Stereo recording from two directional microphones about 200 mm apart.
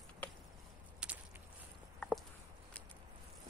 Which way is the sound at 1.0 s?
5° right (ahead or behind).